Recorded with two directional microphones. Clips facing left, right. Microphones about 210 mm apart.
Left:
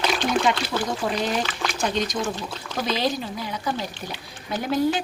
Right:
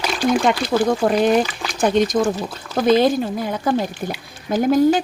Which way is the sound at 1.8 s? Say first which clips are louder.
Right 10 dB; 50° right (ahead or behind).